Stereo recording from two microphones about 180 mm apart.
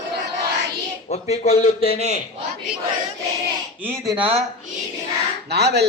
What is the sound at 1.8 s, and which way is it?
Speech, 55° left (ahead or behind).